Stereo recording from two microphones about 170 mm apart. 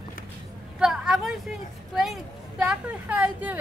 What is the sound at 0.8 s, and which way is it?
A woman's voice, 5° right (ahead or behind).